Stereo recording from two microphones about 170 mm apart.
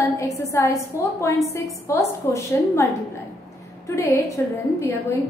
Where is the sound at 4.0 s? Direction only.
15° left (ahead or behind).